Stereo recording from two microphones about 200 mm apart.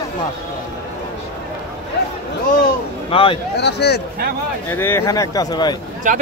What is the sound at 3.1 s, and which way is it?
Speech, 25° left (ahead or behind).